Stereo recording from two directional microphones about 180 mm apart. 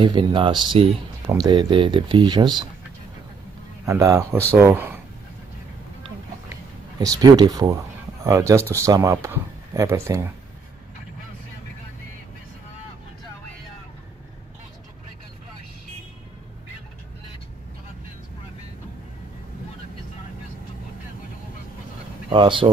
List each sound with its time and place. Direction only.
0.0 s speech: 25° right (ahead or behind)
3.8 s speech: 15° right (ahead or behind)
7.0 s speech: 20° right (ahead or behind)
22.3 s speech: 30° right (ahead or behind)